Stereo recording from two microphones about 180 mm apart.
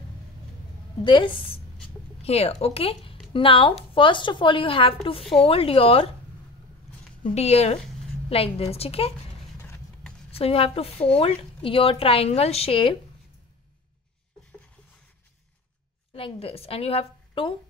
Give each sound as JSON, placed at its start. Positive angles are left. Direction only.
{"t": 1.0, "sound": "a woman's voice", "side_deg": 25}
{"t": 7.2, "sound": "a woman's voice", "side_deg": 35}
{"t": 9.6, "sound": "a sound", "side_deg": 10}
{"t": 10.3, "sound": "a woman's voice", "side_deg": 35}
{"t": 16.2, "sound": "a woman's voice", "side_deg": 30}